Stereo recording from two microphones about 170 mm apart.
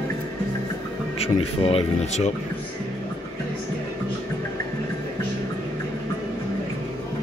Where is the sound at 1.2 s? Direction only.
35° left (ahead or behind).